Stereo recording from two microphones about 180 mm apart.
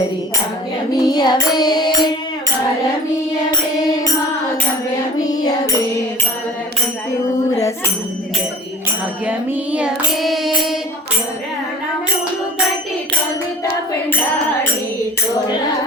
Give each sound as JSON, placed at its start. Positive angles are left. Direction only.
{"t": 1.0, "sound": "child singing", "side_deg": 20}
{"t": 5.2, "sound": "music", "side_deg": 20}
{"t": 9.7, "sound": "child singing", "side_deg": -5}